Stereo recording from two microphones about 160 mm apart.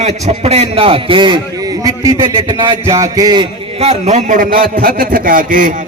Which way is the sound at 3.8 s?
45° right (ahead or behind).